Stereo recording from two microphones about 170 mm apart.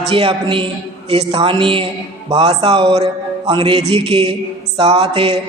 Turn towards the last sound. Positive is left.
turn(degrees=-35)  # may be behind; listen again after turning